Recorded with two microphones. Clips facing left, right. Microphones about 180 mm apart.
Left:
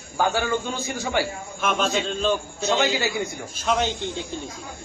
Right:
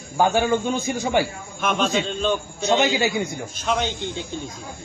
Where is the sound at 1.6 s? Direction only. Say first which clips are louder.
Right 2 dB; 5° left (ahead or behind).